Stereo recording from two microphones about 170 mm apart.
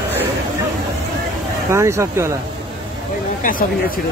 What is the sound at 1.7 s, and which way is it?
Speech, 15° right (ahead or behind).